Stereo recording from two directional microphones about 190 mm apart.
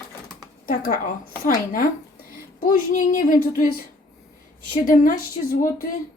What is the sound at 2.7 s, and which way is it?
Speech, 45° left (ahead or behind).